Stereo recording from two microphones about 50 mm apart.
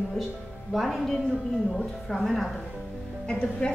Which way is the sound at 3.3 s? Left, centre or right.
Left.